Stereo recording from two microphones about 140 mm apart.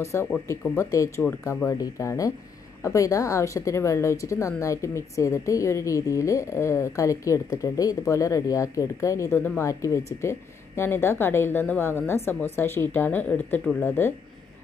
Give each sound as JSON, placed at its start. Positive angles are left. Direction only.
{"t": 0.0, "sound": "a woman's voice", "side_deg": 20}